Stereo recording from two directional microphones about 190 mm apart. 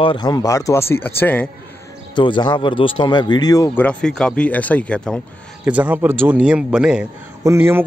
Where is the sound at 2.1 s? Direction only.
25° left (ahead or behind).